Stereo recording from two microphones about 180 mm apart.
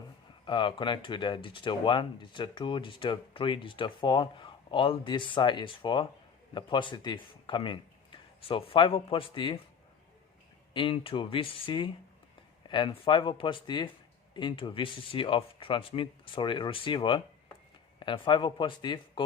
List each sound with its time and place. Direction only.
0.4 s speech: 25° left (ahead or behind)
10.8 s speech: 30° left (ahead or behind)